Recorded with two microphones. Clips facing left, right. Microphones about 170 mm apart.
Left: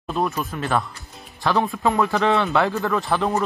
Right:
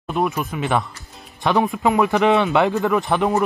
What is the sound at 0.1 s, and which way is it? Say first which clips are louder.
Speech: right 2 dB; 15° right (ahead or behind).